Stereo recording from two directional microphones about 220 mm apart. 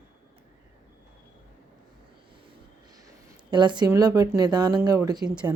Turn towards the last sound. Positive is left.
turn(degrees=-20)  # may be behind; listen again after turning